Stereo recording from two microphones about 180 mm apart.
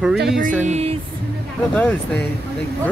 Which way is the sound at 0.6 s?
40° right (ahead or behind).